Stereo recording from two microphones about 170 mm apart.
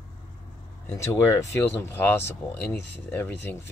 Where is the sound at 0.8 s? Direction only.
15° left (ahead or behind).